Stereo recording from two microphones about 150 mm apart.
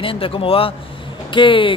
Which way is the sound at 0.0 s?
35° left (ahead or behind).